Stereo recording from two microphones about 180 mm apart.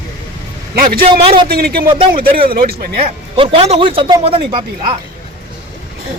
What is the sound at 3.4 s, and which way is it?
Speech, 35° right (ahead or behind).